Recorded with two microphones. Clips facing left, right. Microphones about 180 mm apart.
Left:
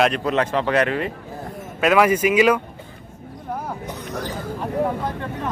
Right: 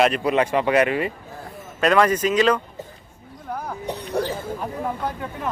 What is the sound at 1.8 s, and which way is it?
Speech, 5° left (ahead or behind).